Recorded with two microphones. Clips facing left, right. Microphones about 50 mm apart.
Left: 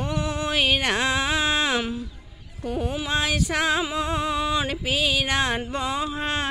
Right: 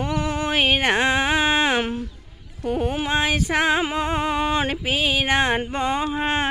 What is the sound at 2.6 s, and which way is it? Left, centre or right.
Speech, right.